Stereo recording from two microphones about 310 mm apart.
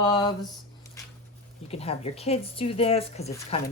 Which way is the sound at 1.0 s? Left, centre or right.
Centre.